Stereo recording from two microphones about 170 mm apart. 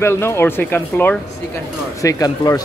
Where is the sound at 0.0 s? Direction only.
15° left (ahead or behind).